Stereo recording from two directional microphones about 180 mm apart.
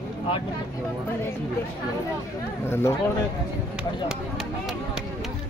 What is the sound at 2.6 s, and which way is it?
Speech, 15° left (ahead or behind).